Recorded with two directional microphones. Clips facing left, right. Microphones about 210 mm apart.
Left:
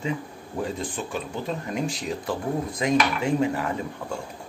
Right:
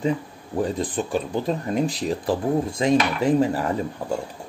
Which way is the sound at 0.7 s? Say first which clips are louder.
Right 6 dB; 35° right (ahead or behind).